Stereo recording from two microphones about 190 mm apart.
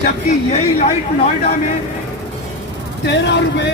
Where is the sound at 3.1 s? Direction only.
65° left (ahead or behind).